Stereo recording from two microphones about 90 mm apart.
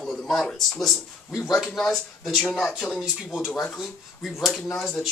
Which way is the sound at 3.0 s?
10° right (ahead or behind).